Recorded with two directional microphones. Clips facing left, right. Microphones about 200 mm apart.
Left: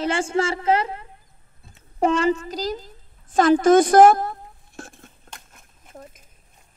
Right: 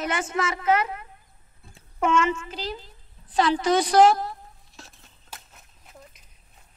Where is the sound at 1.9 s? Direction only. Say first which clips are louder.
Left 4 dB; 35° left (ahead or behind).